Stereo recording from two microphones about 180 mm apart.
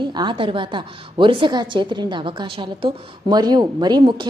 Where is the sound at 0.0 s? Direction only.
25° right (ahead or behind).